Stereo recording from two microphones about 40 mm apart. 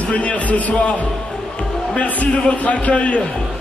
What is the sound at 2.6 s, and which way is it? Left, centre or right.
Speech, left.